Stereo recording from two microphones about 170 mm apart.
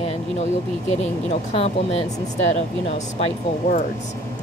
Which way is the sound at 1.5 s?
35° left (ahead or behind).